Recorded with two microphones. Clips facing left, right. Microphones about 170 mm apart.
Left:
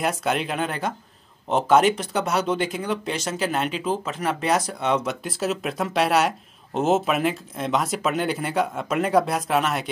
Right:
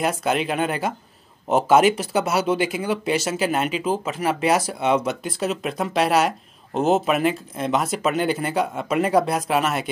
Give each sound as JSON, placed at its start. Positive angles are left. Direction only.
{"t": 0.0, "sound": "speech", "side_deg": 0}